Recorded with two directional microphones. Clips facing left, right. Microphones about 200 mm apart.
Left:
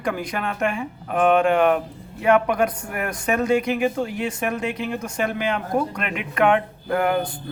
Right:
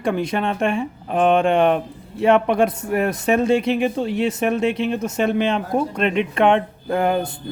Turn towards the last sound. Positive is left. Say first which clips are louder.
# right 2 dB
turn(degrees=-25)  # may be behind; listen again after turning